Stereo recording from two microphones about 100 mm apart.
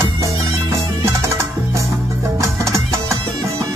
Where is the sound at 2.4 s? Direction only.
30° right (ahead or behind).